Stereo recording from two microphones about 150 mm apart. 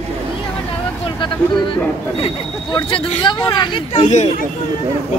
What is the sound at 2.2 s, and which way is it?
Speech, 35° left (ahead or behind).